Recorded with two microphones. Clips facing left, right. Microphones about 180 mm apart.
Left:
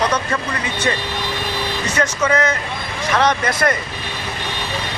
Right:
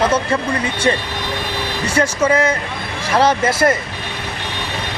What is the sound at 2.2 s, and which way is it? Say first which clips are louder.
Speech: right 2 dB; 30° right (ahead or behind).